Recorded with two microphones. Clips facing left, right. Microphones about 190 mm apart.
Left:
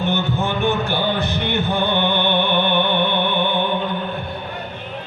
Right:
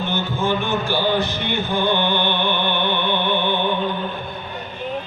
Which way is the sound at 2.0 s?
55° left (ahead or behind).